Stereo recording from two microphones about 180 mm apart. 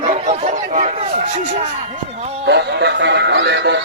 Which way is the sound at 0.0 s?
35° right (ahead or behind).